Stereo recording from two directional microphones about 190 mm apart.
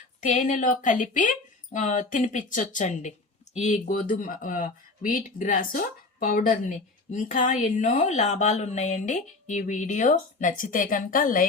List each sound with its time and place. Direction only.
0.2 s speech: 40° left (ahead or behind)